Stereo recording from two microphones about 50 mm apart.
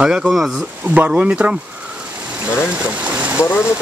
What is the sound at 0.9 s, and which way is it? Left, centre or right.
Speech, right.